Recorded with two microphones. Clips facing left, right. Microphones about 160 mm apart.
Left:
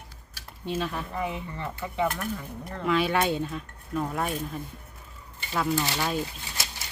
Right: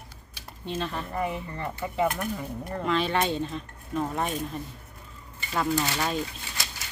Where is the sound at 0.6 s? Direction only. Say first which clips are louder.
Left 1 dB; 10° left (ahead or behind).